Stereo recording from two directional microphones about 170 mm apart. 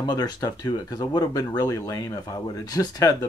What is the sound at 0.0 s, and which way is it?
Speech, 25° left (ahead or behind).